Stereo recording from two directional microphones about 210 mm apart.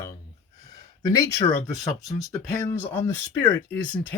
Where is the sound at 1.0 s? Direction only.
15° left (ahead or behind).